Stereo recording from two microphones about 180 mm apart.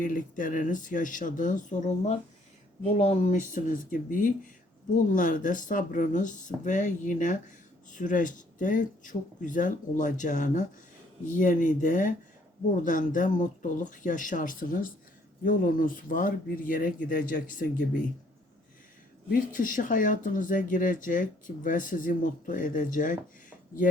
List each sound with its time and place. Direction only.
0.0 s speech: 45° left (ahead or behind)
19.3 s speech: 45° left (ahead or behind)